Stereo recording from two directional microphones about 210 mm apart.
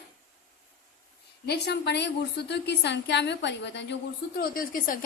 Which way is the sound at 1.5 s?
50° left (ahead or behind).